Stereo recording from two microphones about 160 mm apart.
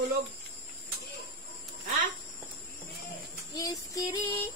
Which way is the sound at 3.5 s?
20° left (ahead or behind).